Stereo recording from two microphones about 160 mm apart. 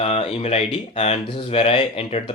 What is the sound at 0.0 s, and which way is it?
Speech, 40° left (ahead or behind).